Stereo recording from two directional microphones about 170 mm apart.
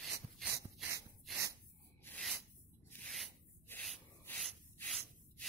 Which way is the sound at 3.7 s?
10° left (ahead or behind).